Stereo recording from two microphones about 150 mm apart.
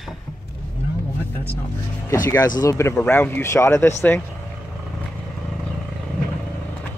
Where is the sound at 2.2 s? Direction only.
20° left (ahead or behind).